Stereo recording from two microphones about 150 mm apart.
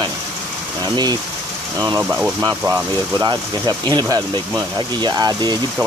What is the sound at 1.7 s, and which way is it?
Speech, 20° right (ahead or behind).